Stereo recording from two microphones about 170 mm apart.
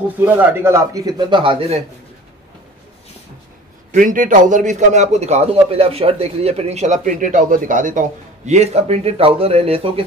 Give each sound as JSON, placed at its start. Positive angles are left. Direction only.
{"t": 0.2, "sound": "a man's voice", "side_deg": -10}
{"t": 3.9, "sound": "a man's voice", "side_deg": -50}